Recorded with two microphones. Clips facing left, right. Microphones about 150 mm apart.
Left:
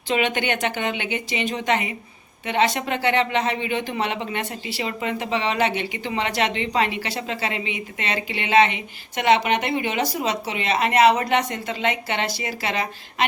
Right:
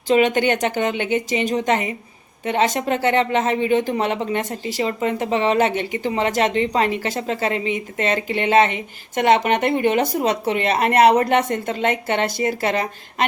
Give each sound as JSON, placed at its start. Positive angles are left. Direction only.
{"t": 0.1, "sound": "speech", "side_deg": -40}